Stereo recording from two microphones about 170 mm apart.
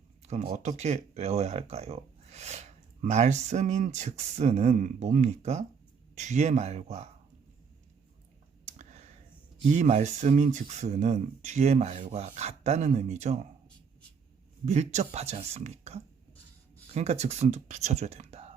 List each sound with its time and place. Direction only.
0.3 s speech: 40° right (ahead or behind)
8.8 s a sound: 40° right (ahead or behind)
9.7 s speech: 45° right (ahead or behind)
14.6 s speech: 40° right (ahead or behind)